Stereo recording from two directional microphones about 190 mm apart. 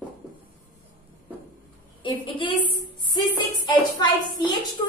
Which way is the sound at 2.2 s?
25° left (ahead or behind).